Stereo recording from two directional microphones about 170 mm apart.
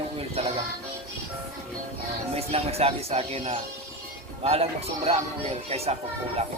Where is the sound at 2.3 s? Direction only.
35° right (ahead or behind).